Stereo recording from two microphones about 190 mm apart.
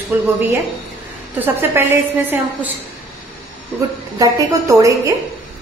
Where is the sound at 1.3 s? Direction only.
10° right (ahead or behind).